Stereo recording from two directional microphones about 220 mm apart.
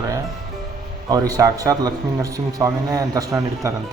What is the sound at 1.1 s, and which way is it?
A man's voice, 15° right (ahead or behind).